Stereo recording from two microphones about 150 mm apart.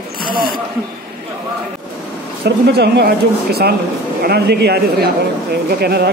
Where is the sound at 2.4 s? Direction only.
90° right.